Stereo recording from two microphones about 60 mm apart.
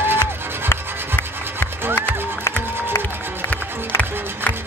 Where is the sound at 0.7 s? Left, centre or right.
Left.